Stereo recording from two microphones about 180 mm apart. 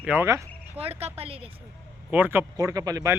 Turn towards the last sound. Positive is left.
turn(degrees=-20)  # may be behind; listen again after turning